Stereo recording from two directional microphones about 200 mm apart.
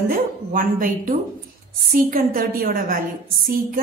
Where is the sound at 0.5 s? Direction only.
40° right (ahead or behind).